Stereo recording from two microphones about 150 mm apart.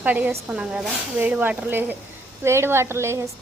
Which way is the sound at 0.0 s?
10° right (ahead or behind).